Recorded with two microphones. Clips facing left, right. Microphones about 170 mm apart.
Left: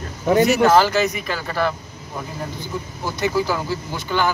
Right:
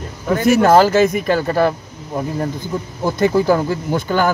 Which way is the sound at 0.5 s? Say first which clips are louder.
Right 4 dB; 50° right (ahead or behind).